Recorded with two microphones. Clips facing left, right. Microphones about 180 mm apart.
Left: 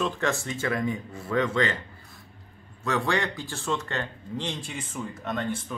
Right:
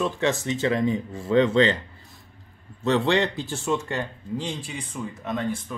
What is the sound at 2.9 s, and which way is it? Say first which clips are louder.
Speech: right 5 dB; 25° right (ahead or behind).